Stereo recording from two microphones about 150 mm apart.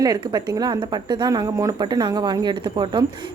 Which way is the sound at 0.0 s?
25° right (ahead or behind).